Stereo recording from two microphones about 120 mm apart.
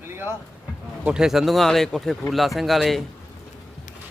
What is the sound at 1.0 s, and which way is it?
Speech, 5° right (ahead or behind).